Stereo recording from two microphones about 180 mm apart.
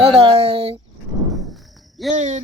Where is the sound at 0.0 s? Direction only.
30° right (ahead or behind).